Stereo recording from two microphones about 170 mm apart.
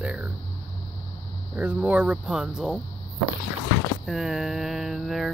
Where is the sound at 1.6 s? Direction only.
10° right (ahead or behind).